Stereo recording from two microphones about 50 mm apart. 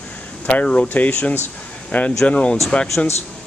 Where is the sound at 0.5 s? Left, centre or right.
Left.